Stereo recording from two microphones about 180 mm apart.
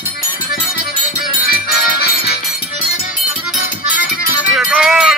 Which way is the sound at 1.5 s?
60° left (ahead or behind).